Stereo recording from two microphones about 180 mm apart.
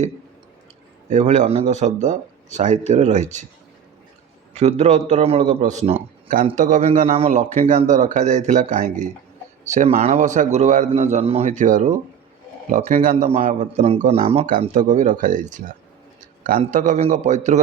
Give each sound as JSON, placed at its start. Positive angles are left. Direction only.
{"t": 1.1, "sound": "a man's voice", "side_deg": -40}
{"t": 4.5, "sound": "a man's voice", "side_deg": -40}
{"t": 6.2, "sound": "a man's voice", "side_deg": -50}
{"t": 14.6, "sound": "speech", "side_deg": -45}
{"t": 16.7, "sound": "a man's voice", "side_deg": -45}